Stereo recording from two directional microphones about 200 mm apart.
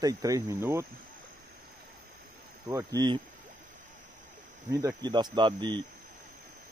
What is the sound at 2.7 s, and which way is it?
Speech, 15° right (ahead or behind).